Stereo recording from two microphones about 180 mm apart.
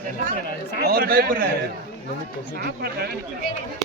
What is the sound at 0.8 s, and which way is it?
Speech, 60° right (ahead or behind).